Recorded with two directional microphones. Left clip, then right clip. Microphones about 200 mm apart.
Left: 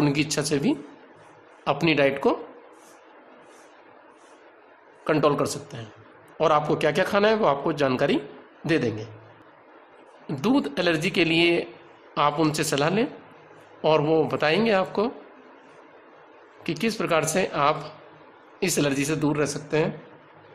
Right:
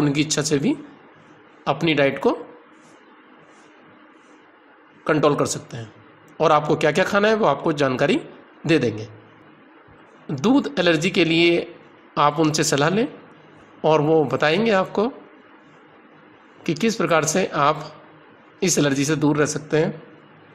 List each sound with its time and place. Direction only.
0.0 s a man's voice: 10° right (ahead or behind)
1.9 s a man's voice: 10° right (ahead or behind)
5.2 s a man's voice: 10° right (ahead or behind)
10.4 s a man's voice: 15° right (ahead or behind)
16.6 s a man's voice: 15° right (ahead or behind)